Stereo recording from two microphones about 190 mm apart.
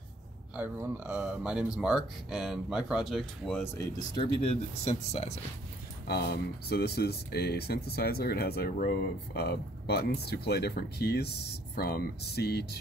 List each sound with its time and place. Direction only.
0.6 s speech: 10° right (ahead or behind)
4.1 s speech: 30° left (ahead or behind)
6.0 s speech: 60° left (ahead or behind)